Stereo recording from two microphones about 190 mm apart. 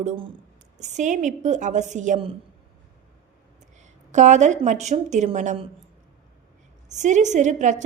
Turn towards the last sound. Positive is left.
turn(degrees=-40)  # may be behind; listen again after turning